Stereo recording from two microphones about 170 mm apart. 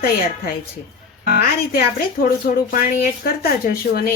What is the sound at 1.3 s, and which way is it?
A woman's voice, 65° left (ahead or behind).